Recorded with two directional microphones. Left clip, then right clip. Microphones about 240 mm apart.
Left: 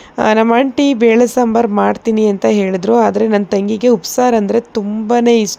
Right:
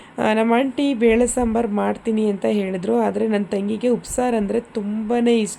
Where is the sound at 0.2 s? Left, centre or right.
Centre.